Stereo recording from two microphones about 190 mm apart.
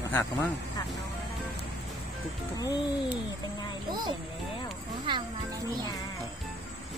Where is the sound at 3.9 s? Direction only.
20° right (ahead or behind).